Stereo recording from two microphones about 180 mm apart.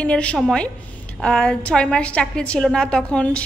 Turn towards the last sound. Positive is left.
turn(degrees=5)  # may be behind; listen again after turning